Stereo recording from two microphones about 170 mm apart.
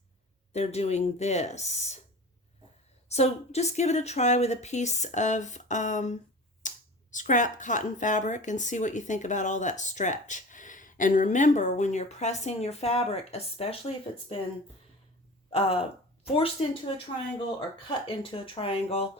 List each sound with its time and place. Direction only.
0.5 s speech: 40° left (ahead or behind)
3.1 s speech: 40° left (ahead or behind)
15.4 s a man's voice: 35° left (ahead or behind)